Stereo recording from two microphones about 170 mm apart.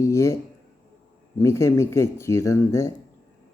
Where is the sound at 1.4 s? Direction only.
15° left (ahead or behind).